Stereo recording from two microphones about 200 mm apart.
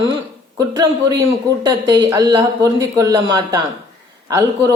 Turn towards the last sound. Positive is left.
turn(degrees=-15)  # may be behind; listen again after turning